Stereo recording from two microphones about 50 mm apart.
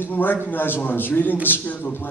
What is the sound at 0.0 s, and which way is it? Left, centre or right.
A man's voice, left.